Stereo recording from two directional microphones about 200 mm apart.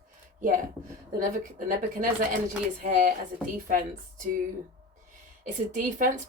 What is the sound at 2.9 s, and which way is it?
Speech, 40° right (ahead or behind).